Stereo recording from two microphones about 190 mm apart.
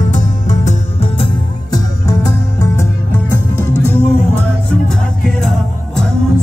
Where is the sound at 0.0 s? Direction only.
40° left (ahead or behind); by 3.2 s 15° left (ahead or behind).